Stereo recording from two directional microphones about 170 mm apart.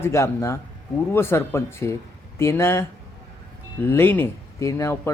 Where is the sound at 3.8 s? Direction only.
15° left (ahead or behind).